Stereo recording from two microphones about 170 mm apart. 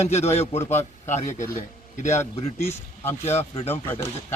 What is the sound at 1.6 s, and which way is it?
Speech, 45° left (ahead or behind).